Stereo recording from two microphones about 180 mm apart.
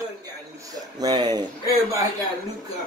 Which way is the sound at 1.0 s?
20° right (ahead or behind).